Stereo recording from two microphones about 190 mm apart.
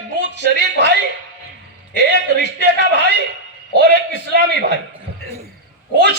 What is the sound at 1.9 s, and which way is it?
Speech, 60° right (ahead or behind).